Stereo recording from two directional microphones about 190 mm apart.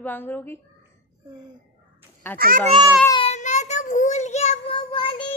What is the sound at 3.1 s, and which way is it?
Child singing, 30° left (ahead or behind).